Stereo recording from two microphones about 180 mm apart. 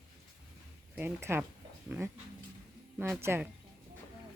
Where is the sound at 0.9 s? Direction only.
10° right (ahead or behind).